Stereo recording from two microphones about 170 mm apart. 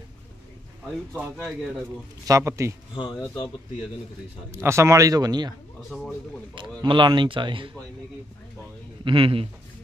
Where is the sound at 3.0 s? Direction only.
25° left (ahead or behind).